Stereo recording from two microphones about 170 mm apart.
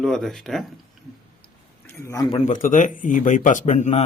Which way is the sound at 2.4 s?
50° left (ahead or behind).